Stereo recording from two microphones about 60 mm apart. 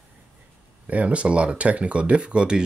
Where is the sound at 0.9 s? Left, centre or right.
Right.